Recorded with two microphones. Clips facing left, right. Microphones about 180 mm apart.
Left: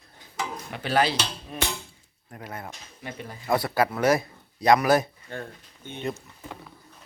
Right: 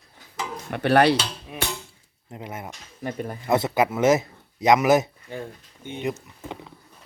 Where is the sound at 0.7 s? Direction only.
65° right (ahead or behind).